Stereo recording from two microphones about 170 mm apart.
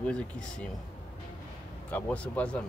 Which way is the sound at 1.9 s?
5° left (ahead or behind).